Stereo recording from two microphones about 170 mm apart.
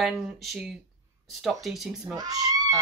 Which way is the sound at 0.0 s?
Centre (ahead or behind).